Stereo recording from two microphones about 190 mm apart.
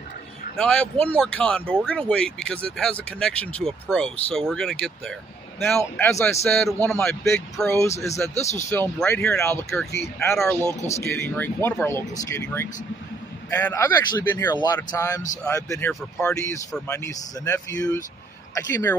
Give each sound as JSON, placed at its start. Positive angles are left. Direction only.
{"t": 0.6, "sound": "speech", "side_deg": 5}
{"t": 8.4, "sound": "a man's voice", "side_deg": 35}
{"t": 8.6, "sound": "speech", "side_deg": 10}